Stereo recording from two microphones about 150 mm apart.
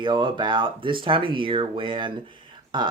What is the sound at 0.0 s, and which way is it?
Speech, 30° right (ahead or behind).